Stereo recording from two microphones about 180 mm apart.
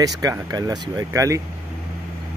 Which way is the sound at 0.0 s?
20° right (ahead or behind).